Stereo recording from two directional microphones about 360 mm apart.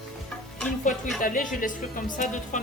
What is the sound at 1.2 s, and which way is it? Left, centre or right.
Speech, left.